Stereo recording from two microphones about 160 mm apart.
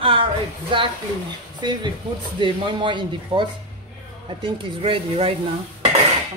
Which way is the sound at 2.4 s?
30° right (ahead or behind).